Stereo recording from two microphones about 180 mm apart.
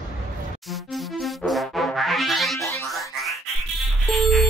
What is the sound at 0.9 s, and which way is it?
Music, centre (ahead or behind).